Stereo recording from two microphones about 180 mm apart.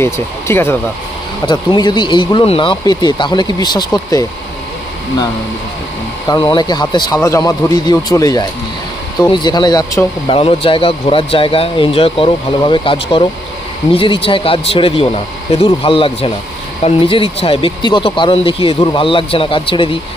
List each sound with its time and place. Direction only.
0.0 s speech: 15° left (ahead or behind)
1.4 s speech: 25° left (ahead or behind)
6.2 s speech: 25° left (ahead or behind)
10.2 s speech: 30° left (ahead or behind)